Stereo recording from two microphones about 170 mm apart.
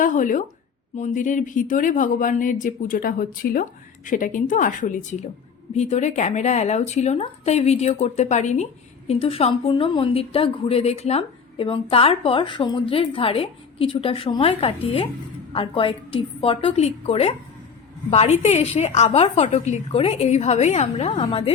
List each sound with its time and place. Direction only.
0.0 s a woman's voice: 50° left (ahead or behind); by 21.5 s 35° left (ahead or behind)